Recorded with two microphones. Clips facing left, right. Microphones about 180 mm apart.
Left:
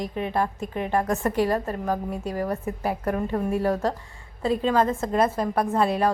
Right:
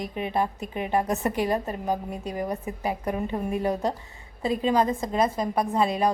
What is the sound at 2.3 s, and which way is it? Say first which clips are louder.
A woman's voice: left 1 dB; 15° right (ahead or behind).